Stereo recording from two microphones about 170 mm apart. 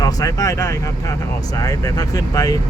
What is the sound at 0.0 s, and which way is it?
Speech, 20° left (ahead or behind).